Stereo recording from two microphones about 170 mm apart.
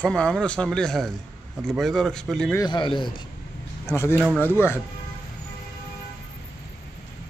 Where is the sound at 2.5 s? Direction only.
25° left (ahead or behind).